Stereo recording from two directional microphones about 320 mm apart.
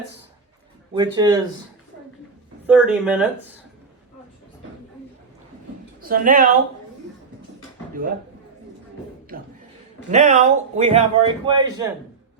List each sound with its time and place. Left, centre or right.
0.9 s speech: centre
2.6 s speech: centre
6.0 s speech: right
10.1 s a man's voice: right